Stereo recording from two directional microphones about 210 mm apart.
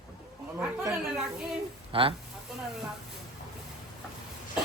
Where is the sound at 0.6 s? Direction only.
5° right (ahead or behind).